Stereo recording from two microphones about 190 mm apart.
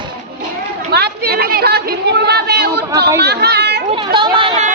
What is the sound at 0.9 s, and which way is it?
A woman's voice, 55° right (ahead or behind).